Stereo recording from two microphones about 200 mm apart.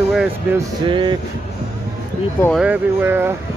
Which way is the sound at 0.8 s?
25° right (ahead or behind).